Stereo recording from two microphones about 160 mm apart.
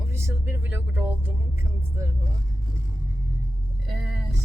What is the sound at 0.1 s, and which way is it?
Vehicle, 15° right (ahead or behind).